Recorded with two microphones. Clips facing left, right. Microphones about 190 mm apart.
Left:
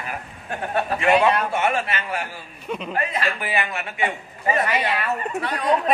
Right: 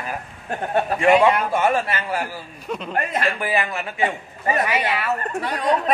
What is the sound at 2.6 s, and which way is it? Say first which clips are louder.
Speech: even; centre (ahead or behind).